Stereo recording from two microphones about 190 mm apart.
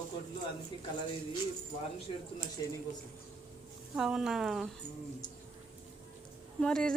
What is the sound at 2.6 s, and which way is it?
Speech, 20° left (ahead or behind).